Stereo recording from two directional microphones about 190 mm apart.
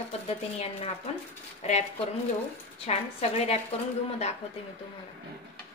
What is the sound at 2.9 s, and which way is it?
Speech, 35° left (ahead or behind).